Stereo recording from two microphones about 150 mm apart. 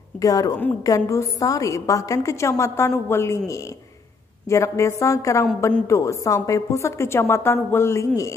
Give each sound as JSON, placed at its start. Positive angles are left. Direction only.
{"t": 0.2, "sound": "a woman's voice", "side_deg": 25}